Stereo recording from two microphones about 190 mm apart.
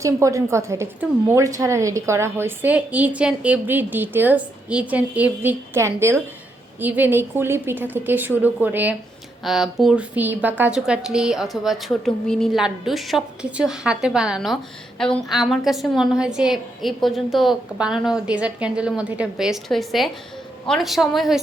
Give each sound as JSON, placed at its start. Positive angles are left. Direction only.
{"t": 0.0, "sound": "a woman's voice", "side_deg": -15}